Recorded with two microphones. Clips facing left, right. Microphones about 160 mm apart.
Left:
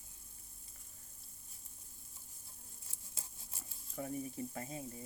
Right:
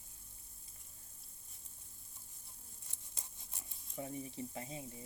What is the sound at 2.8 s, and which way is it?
Patter, 5° left (ahead or behind).